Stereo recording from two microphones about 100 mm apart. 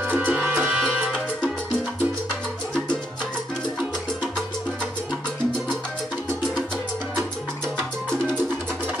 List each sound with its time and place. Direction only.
0.0 s music: 15° right (ahead or behind)
0.4 s music: 5° right (ahead or behind)